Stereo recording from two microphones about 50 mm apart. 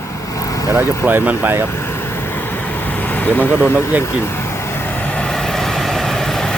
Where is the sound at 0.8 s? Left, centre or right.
Right.